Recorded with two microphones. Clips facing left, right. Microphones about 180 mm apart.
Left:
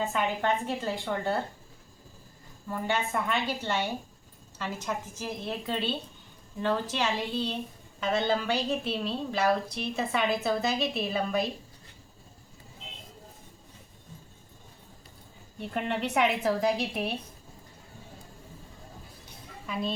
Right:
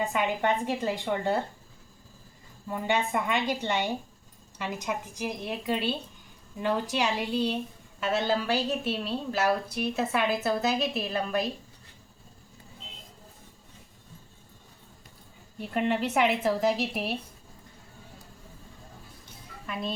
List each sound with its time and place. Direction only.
0.0 s a woman's voice: 15° right (ahead or behind)
2.6 s a woman's voice: 15° right (ahead or behind); by 11.4 s centre (ahead or behind)
15.7 s a woman's voice: 5° right (ahead or behind)
19.6 s speech: centre (ahead or behind)